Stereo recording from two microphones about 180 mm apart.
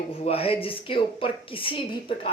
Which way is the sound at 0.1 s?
35° left (ahead or behind).